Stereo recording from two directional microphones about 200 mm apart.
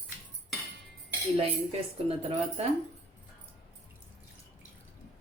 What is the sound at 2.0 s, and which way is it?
Speech, 30° right (ahead or behind).